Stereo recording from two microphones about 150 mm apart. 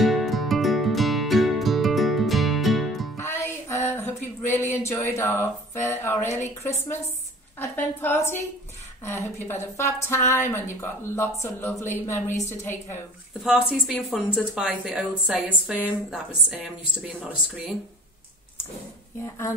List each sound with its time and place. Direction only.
0.0 s music: centre (ahead or behind)
3.2 s music: 15° left (ahead or behind)
6.3 s speech: 15° left (ahead or behind)
13.4 s a woman's voice: 5° right (ahead or behind)
17.2 s speech: 10° right (ahead or behind)